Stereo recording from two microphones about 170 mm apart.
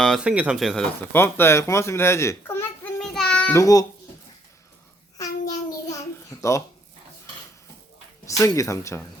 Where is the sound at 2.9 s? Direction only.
5° left (ahead or behind).